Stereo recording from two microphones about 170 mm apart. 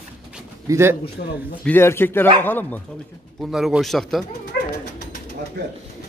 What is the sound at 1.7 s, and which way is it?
A man's voice, 15° left (ahead or behind).